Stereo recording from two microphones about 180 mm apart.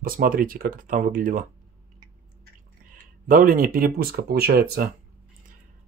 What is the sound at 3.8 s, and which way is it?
Speech, 55° right (ahead or behind).